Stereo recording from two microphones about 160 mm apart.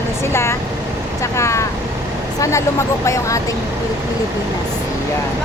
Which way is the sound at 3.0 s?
20° left (ahead or behind).